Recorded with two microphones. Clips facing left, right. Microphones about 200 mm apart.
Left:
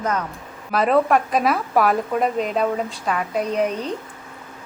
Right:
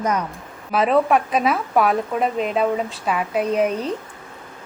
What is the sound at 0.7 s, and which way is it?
Speech, centre (ahead or behind).